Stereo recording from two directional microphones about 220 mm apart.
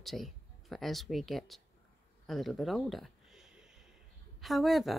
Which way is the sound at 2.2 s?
Centre (ahead or behind).